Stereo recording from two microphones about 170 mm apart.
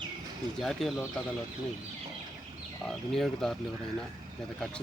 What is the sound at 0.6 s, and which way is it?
Speech, centre (ahead or behind).